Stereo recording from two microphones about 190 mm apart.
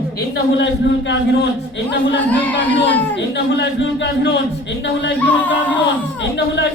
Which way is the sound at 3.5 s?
65° left (ahead or behind).